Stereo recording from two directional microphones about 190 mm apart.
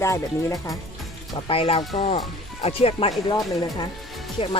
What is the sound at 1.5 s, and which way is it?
Speech, 30° left (ahead or behind).